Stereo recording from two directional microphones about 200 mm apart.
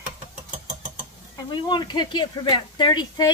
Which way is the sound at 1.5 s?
20° left (ahead or behind).